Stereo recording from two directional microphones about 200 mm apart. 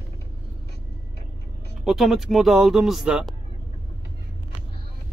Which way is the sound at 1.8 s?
Centre (ahead or behind).